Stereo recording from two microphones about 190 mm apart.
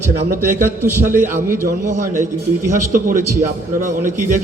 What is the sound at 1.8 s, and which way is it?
A man's voice, 40° right (ahead or behind).